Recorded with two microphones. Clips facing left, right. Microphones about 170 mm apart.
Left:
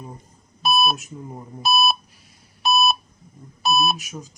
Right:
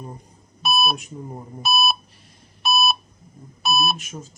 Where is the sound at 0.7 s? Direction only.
Centre (ahead or behind).